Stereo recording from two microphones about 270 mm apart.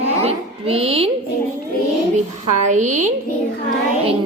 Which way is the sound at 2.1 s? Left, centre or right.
Right.